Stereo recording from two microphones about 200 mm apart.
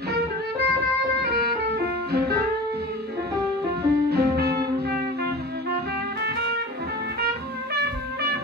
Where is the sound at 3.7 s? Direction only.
50° right (ahead or behind).